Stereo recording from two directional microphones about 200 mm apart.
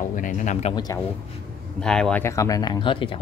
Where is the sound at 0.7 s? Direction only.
20° left (ahead or behind).